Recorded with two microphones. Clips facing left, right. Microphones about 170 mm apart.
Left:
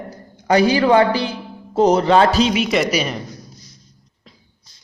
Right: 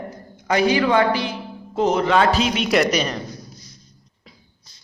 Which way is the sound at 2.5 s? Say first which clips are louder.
Left 1 dB; centre (ahead or behind).